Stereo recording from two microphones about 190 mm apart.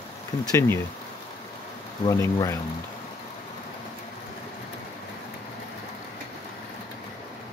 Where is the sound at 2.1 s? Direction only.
15° left (ahead or behind).